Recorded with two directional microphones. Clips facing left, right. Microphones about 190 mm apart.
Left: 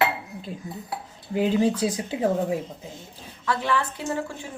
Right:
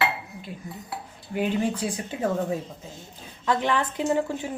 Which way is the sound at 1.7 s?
90° left.